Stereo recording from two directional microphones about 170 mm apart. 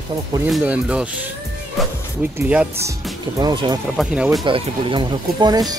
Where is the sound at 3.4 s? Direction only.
25° right (ahead or behind).